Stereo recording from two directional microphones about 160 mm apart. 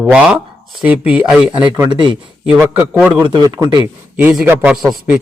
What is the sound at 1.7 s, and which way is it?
Speech, 25° right (ahead or behind).